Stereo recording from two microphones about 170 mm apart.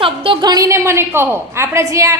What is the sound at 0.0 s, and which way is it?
A woman's voice, 30° right (ahead or behind).